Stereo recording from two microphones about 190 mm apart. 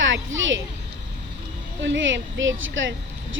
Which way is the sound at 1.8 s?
80° right.